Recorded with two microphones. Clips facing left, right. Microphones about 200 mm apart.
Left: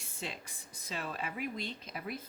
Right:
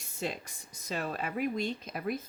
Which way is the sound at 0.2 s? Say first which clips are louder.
Right 7 dB; 45° right (ahead or behind).